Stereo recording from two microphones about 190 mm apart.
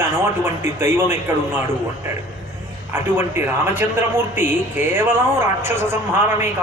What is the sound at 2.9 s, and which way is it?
A man's voice, 10° right (ahead or behind).